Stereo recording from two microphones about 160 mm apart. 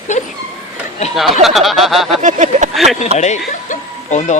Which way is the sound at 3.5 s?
50° left (ahead or behind).